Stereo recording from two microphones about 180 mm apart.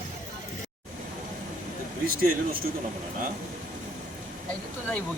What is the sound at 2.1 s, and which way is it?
Speech, 55° right (ahead or behind).